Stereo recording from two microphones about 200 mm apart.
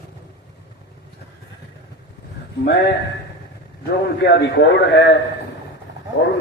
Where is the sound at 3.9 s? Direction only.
55° left (ahead or behind).